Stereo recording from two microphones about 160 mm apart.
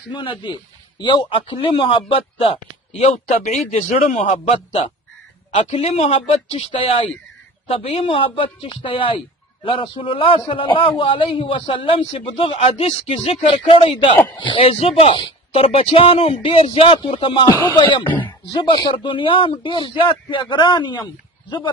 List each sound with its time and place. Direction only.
0.1 s a man's voice: 30° left (ahead or behind)